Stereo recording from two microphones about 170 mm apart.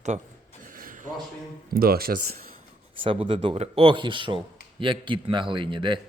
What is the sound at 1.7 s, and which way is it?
Speech, 60° right (ahead or behind).